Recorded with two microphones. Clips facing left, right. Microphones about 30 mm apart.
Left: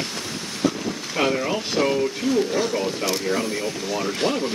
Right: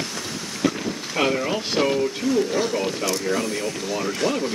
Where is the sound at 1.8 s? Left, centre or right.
Centre.